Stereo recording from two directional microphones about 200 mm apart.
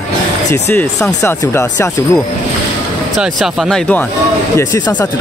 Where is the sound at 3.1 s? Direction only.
Centre (ahead or behind).